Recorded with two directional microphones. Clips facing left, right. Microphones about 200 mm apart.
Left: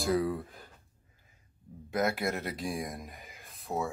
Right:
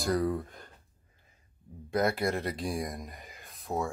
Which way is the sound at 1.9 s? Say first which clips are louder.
Right 2 dB; centre (ahead or behind).